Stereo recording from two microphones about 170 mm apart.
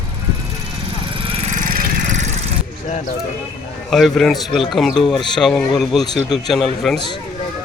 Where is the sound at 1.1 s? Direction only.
40° right (ahead or behind).